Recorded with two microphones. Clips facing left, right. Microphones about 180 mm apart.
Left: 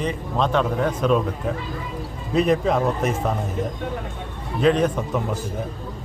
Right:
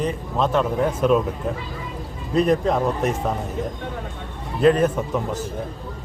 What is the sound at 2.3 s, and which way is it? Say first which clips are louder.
Speech: even; centre (ahead or behind).